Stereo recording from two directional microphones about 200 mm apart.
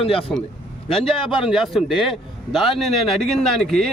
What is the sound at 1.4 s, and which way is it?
A man's voice, centre (ahead or behind).